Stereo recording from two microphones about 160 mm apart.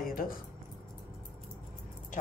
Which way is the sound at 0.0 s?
65° left (ahead or behind).